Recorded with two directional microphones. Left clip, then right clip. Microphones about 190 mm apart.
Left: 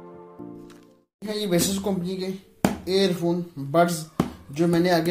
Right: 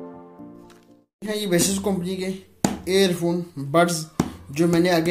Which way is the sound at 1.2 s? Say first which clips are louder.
Right 2 dB; 10° right (ahead or behind).